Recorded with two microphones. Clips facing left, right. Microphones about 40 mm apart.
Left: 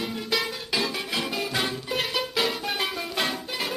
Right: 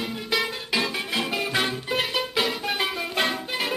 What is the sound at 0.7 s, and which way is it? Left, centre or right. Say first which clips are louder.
Music: right 2 dB; right.